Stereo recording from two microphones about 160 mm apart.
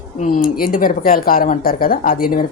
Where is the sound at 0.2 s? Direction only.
60° left (ahead or behind).